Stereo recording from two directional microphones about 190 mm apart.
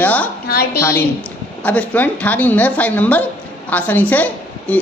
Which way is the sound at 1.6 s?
10° left (ahead or behind).